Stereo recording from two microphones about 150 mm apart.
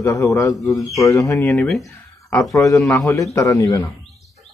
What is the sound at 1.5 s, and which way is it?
Speech, 5° left (ahead or behind).